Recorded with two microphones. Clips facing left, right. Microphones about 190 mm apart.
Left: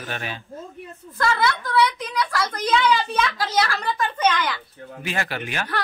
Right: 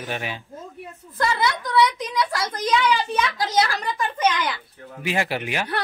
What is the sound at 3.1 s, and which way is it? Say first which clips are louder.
A man's voice: right 1 dB; 20° right (ahead or behind).